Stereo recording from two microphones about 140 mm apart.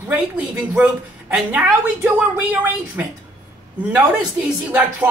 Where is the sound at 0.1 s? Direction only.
10° right (ahead or behind).